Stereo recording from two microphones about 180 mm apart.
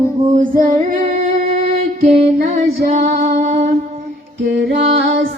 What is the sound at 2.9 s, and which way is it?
Music, 40° right (ahead or behind).